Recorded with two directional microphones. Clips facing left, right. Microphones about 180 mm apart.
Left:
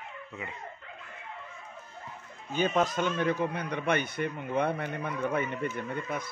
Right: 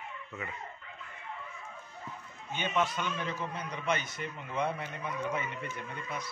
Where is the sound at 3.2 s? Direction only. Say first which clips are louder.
Left 8 dB; 60° left (ahead or behind).